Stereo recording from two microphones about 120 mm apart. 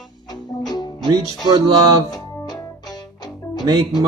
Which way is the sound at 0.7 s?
35° left (ahead or behind).